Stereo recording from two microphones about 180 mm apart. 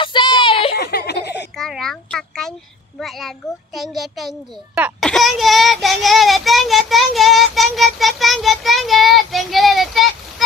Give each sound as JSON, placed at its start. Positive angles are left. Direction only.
{"t": 0.0, "sound": "a sound", "side_deg": 25}
{"t": 0.7, "sound": "baby laughter", "side_deg": 60}
{"t": 1.6, "sound": "a child's voice", "side_deg": 0}
{"t": 3.0, "sound": "child singing", "side_deg": 0}